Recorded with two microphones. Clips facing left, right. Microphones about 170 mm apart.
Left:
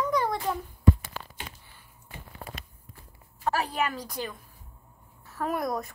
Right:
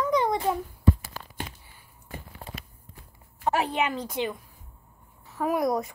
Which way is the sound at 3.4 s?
25° right (ahead or behind).